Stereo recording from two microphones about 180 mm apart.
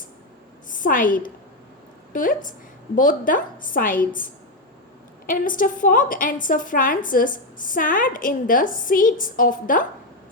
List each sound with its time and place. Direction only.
0.7 s a woman's voice: 50° left (ahead or behind)